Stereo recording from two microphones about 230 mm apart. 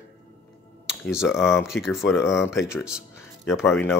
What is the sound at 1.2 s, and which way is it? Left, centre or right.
Speech, centre.